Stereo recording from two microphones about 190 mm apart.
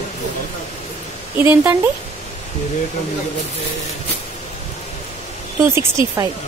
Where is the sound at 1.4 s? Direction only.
10° right (ahead or behind).